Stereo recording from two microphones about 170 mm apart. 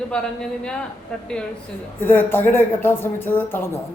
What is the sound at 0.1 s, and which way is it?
A woman's voice, 5° left (ahead or behind).